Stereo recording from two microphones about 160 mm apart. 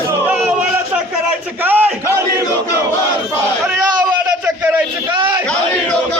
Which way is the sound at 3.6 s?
20° right (ahead or behind).